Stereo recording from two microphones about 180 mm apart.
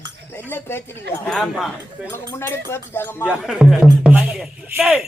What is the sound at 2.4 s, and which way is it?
Speech, 15° left (ahead or behind).